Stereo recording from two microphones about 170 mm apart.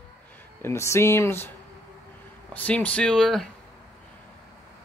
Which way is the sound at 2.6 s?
10° left (ahead or behind).